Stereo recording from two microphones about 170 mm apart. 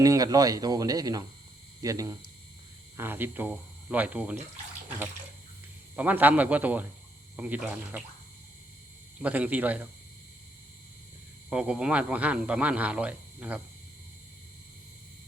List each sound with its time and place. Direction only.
0.0 s a man's voice: 20° right (ahead or behind)
6.0 s a man's voice: 10° right (ahead or behind)
9.2 s a man's voice: 10° right (ahead or behind)
11.4 s a man's voice: 5° right (ahead or behind)